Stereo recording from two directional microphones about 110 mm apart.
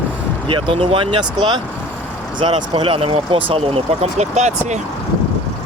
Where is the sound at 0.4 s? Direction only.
55° right (ahead or behind); by 4.8 s 90° right.